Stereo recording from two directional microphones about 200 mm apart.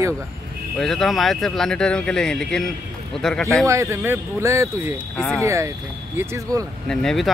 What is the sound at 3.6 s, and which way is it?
Speech, 15° right (ahead or behind).